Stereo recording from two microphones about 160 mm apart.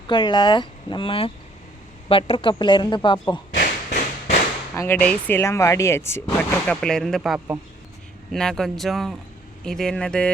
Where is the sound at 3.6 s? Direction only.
50° left (ahead or behind).